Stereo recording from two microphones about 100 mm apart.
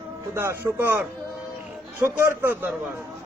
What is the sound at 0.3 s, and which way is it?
Speech, 25° right (ahead or behind).